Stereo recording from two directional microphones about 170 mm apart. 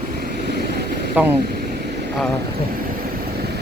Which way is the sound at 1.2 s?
10° right (ahead or behind).